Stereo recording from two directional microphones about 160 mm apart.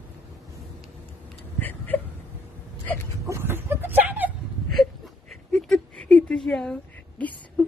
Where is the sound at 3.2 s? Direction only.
15° right (ahead or behind).